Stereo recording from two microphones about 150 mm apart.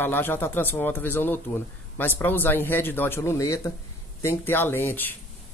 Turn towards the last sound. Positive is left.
turn(degrees=15)  # may be behind; listen again after turning